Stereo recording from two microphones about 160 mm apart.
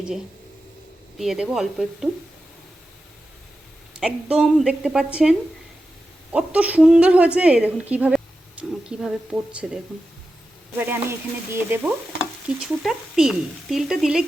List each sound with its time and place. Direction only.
1.2 s speech: 5° right (ahead or behind)
4.0 s a woman's voice: 5° right (ahead or behind)
12.5 s speech: 5° right (ahead or behind)